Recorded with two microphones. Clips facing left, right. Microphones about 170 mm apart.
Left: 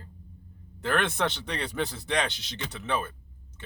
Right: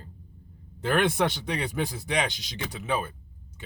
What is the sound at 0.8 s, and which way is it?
Speech, 15° right (ahead or behind).